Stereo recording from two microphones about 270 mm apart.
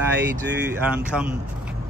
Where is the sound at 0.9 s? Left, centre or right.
Centre.